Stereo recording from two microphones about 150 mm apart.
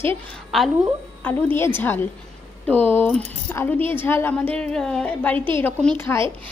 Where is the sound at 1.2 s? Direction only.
10° left (ahead or behind).